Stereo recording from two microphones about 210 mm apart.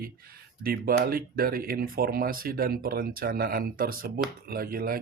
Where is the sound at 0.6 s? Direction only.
45° right (ahead or behind).